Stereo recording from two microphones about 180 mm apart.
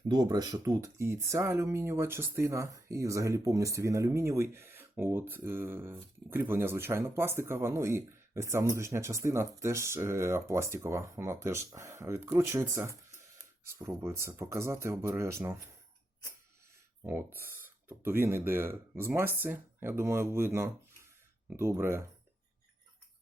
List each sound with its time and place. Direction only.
0.1 s speech: 20° right (ahead or behind)
17.0 s speech: 15° right (ahead or behind)